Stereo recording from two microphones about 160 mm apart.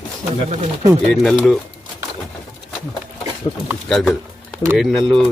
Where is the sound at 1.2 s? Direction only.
Centre (ahead or behind).